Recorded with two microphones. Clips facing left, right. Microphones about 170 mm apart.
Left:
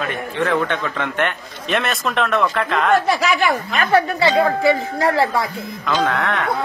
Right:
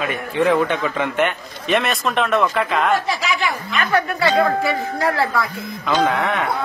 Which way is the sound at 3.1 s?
50° left (ahead or behind).